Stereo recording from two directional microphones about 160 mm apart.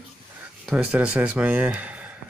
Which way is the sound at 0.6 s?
5° right (ahead or behind).